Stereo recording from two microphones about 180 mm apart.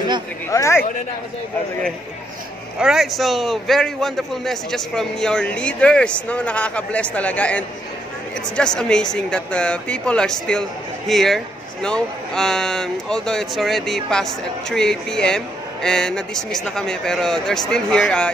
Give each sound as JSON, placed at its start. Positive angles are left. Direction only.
{"t": 0.5, "sound": "speech", "side_deg": 15}
{"t": 2.8, "sound": "a man's voice", "side_deg": 0}